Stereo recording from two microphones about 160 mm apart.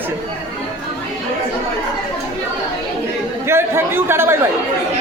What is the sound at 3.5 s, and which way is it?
Speech, 15° right (ahead or behind).